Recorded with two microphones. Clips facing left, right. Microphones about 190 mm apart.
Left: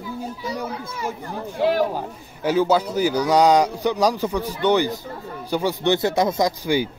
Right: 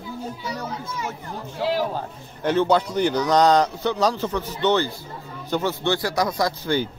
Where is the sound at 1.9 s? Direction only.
5° left (ahead or behind).